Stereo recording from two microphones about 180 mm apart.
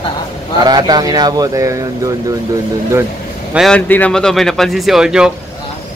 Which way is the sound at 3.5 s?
Centre (ahead or behind).